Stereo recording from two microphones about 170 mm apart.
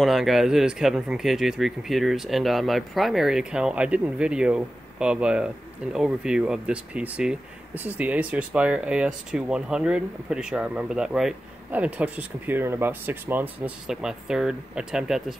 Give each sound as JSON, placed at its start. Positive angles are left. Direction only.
{"t": 0.0, "sound": "speech", "side_deg": 0}